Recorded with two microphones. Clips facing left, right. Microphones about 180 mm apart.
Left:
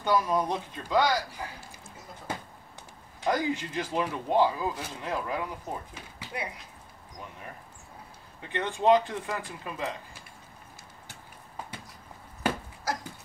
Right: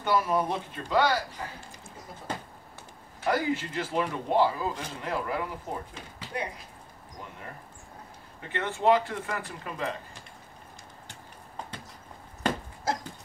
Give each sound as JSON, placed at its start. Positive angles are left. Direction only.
{"t": 0.0, "sound": "a man's voice", "side_deg": 15}
{"t": 3.2, "sound": "a man's voice", "side_deg": 15}
{"t": 8.4, "sound": "a man's voice", "side_deg": 15}
{"t": 11.1, "sound": "clip-clop", "side_deg": 10}
{"t": 12.4, "sound": "dog", "side_deg": 10}